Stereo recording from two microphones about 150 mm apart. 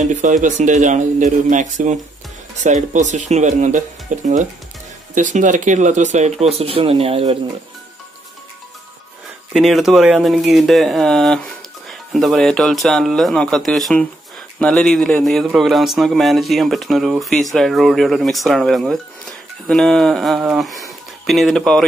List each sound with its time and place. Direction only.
0.0 s speech: 55° right (ahead or behind)
9.5 s speech: centre (ahead or behind)